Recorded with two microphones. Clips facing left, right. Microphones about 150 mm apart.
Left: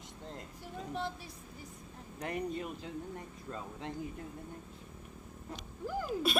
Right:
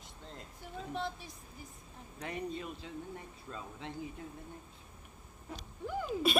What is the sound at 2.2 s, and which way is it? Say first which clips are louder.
Speech: left 3 dB; 55° left (ahead or behind).